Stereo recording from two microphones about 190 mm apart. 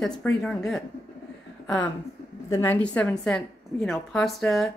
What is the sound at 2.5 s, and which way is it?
A woman's voice, 10° left (ahead or behind).